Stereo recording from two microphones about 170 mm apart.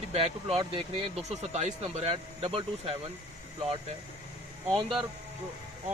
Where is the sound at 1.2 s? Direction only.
40° right (ahead or behind).